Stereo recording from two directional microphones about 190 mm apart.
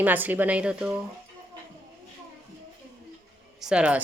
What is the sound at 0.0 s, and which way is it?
Speech, 10° right (ahead or behind).